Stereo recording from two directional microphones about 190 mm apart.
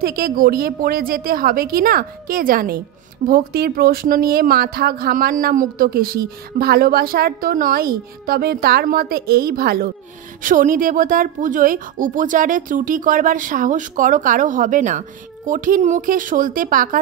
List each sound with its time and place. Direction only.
0.0 s speech: 50° right (ahead or behind)